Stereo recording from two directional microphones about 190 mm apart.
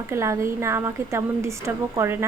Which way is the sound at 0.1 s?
15° right (ahead or behind).